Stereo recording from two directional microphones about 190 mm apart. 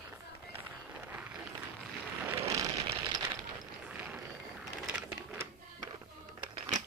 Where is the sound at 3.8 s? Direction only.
5° right (ahead or behind).